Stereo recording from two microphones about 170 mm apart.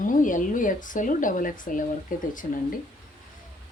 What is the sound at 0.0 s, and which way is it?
Speech, 50° left (ahead or behind).